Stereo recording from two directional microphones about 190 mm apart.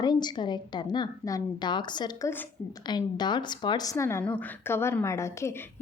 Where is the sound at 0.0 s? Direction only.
20° left (ahead or behind).